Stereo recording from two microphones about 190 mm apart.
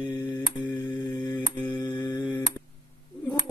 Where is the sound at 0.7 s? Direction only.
20° left (ahead or behind).